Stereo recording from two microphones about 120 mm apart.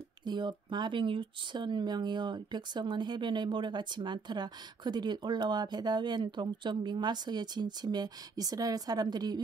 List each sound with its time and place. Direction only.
0.2 s speech: 35° right (ahead or behind)